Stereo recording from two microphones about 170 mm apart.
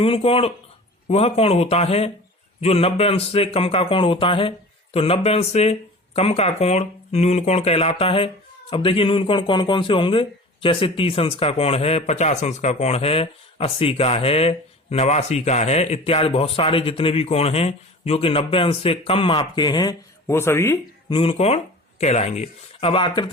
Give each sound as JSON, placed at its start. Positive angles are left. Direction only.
{"t": 0.0, "sound": "a man's voice", "side_deg": 35}
{"t": 21.1, "sound": "a man's voice", "side_deg": 35}